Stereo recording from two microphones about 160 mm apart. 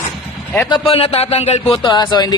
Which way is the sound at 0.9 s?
40° left (ahead or behind).